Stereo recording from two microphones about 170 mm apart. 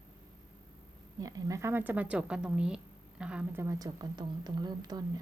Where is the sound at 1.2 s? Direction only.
20° right (ahead or behind).